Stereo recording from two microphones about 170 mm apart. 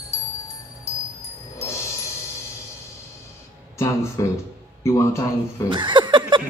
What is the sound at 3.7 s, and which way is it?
Speech, 15° left (ahead or behind).